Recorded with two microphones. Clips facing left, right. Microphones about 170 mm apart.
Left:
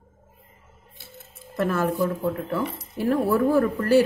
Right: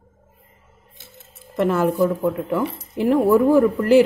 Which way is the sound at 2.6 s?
25° right (ahead or behind).